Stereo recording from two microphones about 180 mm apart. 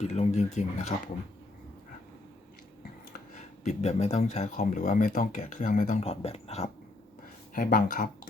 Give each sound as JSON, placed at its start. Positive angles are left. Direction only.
{"t": 0.0, "sound": "speech", "side_deg": 40}
{"t": 3.3, "sound": "speech", "side_deg": 40}
{"t": 7.5, "sound": "speech", "side_deg": 50}